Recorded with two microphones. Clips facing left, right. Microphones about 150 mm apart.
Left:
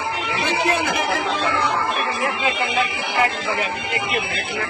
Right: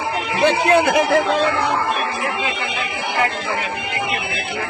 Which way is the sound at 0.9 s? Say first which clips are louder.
Right 6 dB; 55° right (ahead or behind).